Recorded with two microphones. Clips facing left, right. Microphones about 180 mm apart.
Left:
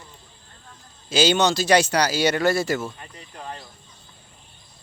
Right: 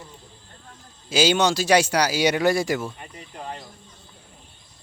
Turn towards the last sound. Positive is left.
turn(degrees=-15)  # may be behind; listen again after turning